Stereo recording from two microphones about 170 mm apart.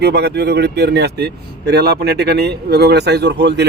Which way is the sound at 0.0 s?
85° right.